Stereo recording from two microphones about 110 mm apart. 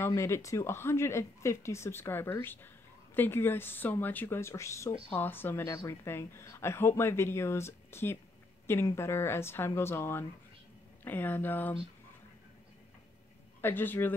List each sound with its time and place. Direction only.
0.0 s speech: 25° left (ahead or behind)
13.6 s speech: 20° left (ahead or behind)